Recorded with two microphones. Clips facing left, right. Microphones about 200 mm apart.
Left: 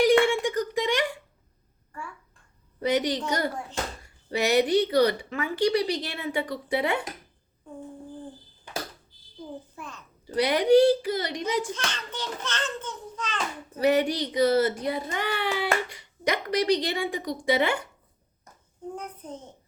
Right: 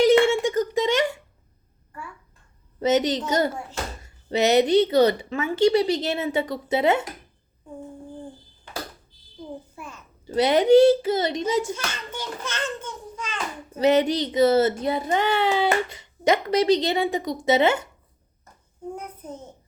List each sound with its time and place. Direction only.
0.0 s a sound: 25° right (ahead or behind)
2.8 s speech: 25° right (ahead or behind)
9.7 s a sound: 10° right (ahead or behind)
10.2 s speech: 25° right (ahead or behind)
11.7 s a child's voice: 10° right (ahead or behind)
13.7 s speech: 20° right (ahead or behind)
18.9 s a child's voice: 10° right (ahead or behind)